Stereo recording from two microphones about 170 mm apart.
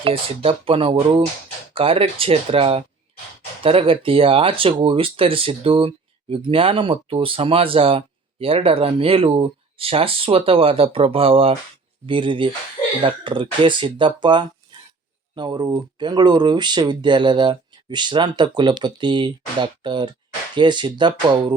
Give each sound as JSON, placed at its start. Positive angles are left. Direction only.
{"t": 0.0, "sound": "speech", "side_deg": -30}